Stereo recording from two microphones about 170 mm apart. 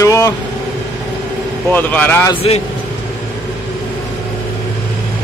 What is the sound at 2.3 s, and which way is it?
Speech, 35° left (ahead or behind).